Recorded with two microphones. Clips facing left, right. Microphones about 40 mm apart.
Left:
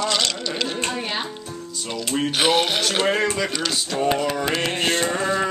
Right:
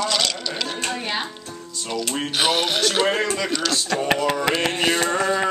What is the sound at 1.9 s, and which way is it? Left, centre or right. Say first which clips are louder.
Speech: left 1 dB; centre.